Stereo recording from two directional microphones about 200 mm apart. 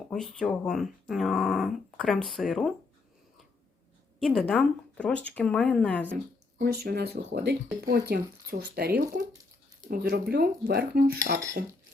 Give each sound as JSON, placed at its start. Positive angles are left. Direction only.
{"t": 0.1, "sound": "speech", "side_deg": 0}
{"t": 4.2, "sound": "speech", "side_deg": 0}
{"t": 6.6, "sound": "speech", "side_deg": -50}